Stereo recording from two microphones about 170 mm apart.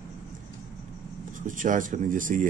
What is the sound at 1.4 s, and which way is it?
Speech, 50° right (ahead or behind).